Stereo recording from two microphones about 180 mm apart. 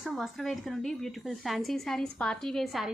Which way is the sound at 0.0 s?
Centre (ahead or behind).